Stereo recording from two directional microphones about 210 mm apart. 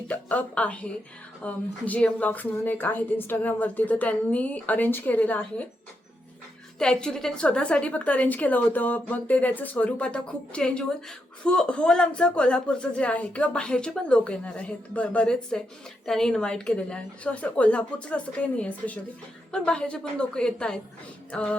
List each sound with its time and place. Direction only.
0.1 s a woman's voice: 5° left (ahead or behind)
6.7 s a woman's voice: 5° left (ahead or behind)